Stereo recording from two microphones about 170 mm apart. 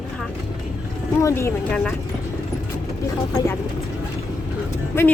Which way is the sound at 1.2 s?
15° left (ahead or behind).